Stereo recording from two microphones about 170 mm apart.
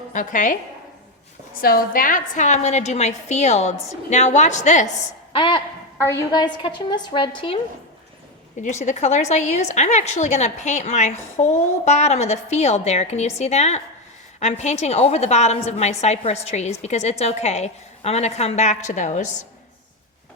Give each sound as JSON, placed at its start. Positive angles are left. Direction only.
{"t": 0.1, "sound": "speech", "side_deg": 50}
{"t": 1.6, "sound": "a woman's voice", "side_deg": 55}
{"t": 5.3, "sound": "a woman's voice", "side_deg": 30}
{"t": 8.5, "sound": "a woman's voice", "side_deg": 45}